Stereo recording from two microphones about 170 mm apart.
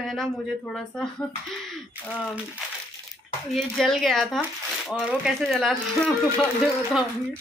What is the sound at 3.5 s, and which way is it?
Speech, centre (ahead or behind).